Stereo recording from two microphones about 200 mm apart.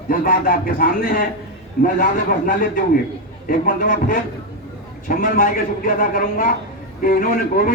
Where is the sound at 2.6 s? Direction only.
45° left (ahead or behind).